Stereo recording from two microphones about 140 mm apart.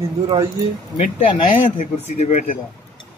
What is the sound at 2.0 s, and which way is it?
Speech, 50° left (ahead or behind).